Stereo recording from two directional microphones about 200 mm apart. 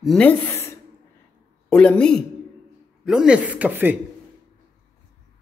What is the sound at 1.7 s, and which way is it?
Speech, 5° left (ahead or behind).